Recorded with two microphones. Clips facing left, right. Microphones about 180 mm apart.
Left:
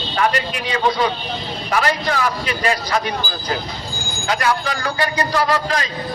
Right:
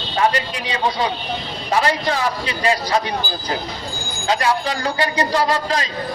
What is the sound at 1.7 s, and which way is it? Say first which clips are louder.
Speech: right 1 dB; 25° right (ahead or behind).